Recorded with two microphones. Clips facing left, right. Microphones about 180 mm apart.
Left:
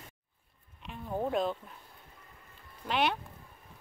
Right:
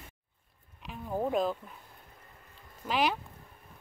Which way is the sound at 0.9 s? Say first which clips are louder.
Right 1 dB; 5° right (ahead or behind).